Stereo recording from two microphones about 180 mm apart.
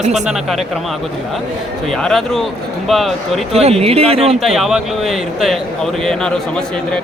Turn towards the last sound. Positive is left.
turn(degrees=0)  # may be behind; listen again after turning